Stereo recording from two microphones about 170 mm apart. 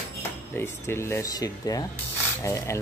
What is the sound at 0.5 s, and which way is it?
Speech, 15° left (ahead or behind).